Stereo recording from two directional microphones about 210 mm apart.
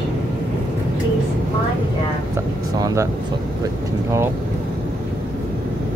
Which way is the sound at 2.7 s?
15° right (ahead or behind).